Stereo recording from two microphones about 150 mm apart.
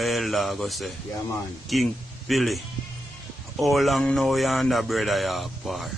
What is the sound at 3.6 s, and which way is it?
Speech, centre (ahead or behind).